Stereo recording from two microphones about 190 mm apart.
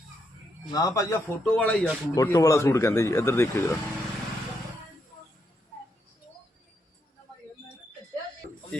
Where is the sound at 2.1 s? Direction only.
15° left (ahead or behind).